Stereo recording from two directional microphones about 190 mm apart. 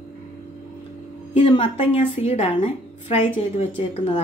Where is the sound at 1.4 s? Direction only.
25° left (ahead or behind).